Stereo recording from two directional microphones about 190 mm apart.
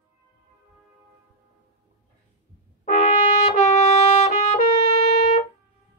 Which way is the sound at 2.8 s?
40° left (ahead or behind).